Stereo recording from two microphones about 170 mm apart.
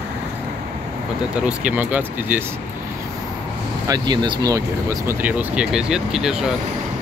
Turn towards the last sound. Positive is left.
turn(degrees=-5)  # may be behind; listen again after turning